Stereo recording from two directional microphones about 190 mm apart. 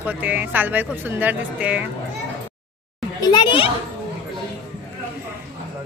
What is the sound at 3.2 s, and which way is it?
Speech, 25° left (ahead or behind).